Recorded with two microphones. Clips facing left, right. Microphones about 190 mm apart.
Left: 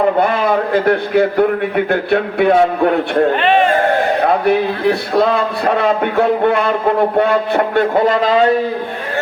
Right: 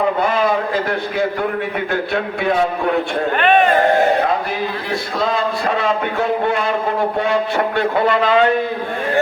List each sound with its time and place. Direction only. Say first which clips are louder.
0.2 s a man's voice: left 3 dB; 60° left (ahead or behind)
4.3 s a man's voice: left 7 dB; 65° left (ahead or behind); by 8.5 s 35° left (ahead or behind)